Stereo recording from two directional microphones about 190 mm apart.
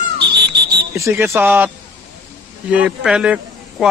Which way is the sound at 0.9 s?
15° right (ahead or behind).